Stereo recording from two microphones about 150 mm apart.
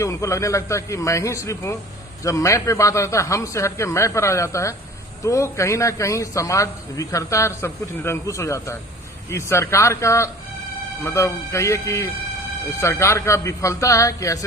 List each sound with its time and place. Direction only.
0.0 s a man's voice: 20° left (ahead or behind)